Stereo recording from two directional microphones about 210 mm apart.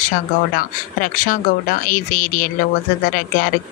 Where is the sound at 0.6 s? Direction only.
40° left (ahead or behind).